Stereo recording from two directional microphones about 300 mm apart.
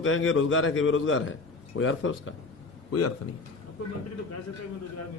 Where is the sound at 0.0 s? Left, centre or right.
Left.